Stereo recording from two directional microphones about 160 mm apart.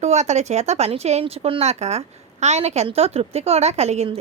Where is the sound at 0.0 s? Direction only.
45° right (ahead or behind).